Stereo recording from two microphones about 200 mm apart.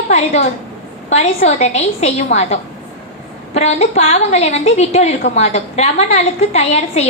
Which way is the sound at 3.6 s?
35° left (ahead or behind).